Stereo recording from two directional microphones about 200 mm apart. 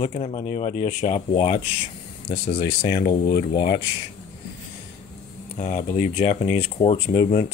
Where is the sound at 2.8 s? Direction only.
40° left (ahead or behind).